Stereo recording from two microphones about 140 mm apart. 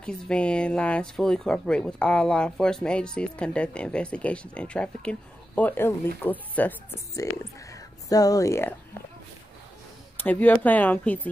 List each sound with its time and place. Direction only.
0.0 s speech: 5° left (ahead or behind)
7.7 s speech: 25° left (ahead or behind)
10.2 s speech: 10° left (ahead or behind)